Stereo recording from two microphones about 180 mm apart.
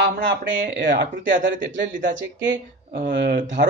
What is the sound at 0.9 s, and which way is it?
Speech, 90° right.